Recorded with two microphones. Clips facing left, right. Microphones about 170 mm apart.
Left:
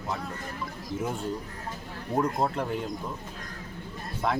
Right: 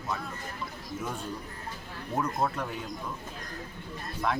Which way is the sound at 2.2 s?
30° left (ahead or behind).